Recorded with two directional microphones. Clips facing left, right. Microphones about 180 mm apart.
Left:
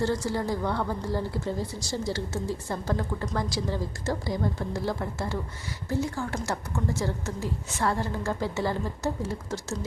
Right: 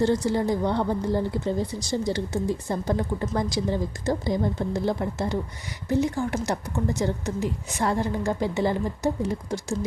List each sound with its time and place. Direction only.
0.0 s a woman's voice: 20° right (ahead or behind)